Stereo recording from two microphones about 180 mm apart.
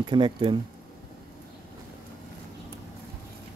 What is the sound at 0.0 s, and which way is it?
Speech, 25° right (ahead or behind).